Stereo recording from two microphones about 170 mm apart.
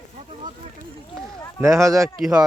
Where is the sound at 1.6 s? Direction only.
20° right (ahead or behind).